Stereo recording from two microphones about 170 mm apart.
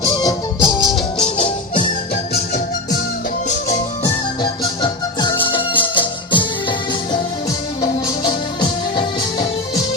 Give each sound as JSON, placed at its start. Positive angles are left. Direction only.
{"t": 0.2, "sound": "music", "side_deg": 25}
{"t": 4.6, "sound": "music", "side_deg": 25}